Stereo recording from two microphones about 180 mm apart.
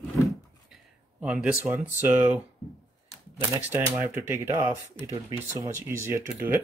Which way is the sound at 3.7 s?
10° right (ahead or behind).